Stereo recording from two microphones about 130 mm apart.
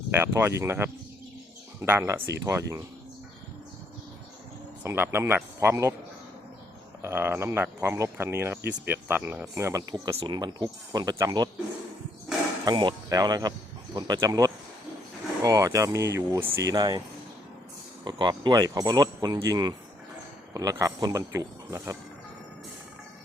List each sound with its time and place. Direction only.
0.1 s speech: 20° right (ahead or behind)
4.8 s speech: 20° right (ahead or behind)
7.0 s speech: 20° right (ahead or behind)
10.2 s speech: 35° right (ahead or behind)
12.6 s speech: 35° right (ahead or behind)
18.0 s speech: 35° right (ahead or behind)